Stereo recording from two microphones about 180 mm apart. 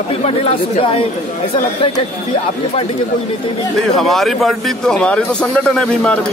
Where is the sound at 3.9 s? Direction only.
Centre (ahead or behind).